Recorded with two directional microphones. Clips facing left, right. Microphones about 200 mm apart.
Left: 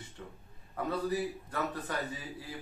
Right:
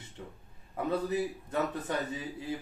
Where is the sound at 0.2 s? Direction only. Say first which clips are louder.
Right 3 dB; 20° right (ahead or behind).